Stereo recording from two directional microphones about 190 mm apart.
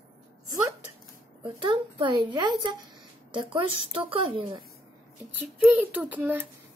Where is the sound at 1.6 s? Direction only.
25° right (ahead or behind).